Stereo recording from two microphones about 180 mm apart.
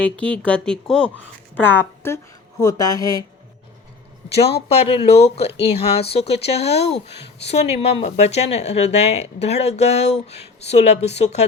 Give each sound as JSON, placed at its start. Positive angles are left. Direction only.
{"t": 0.0, "sound": "a woman's voice", "side_deg": 5}
{"t": 4.7, "sound": "speech", "side_deg": 35}